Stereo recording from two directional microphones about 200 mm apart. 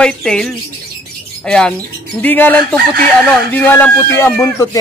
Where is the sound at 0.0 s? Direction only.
5° left (ahead or behind).